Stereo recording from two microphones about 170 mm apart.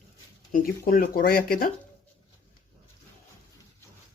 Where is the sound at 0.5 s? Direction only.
55° left (ahead or behind).